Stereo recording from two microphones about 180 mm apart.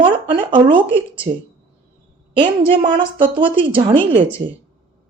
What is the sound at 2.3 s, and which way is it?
Speech, 30° right (ahead or behind).